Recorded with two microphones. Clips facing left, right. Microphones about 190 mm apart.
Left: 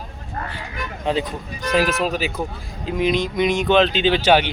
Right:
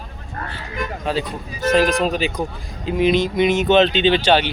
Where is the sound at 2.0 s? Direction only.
5° left (ahead or behind).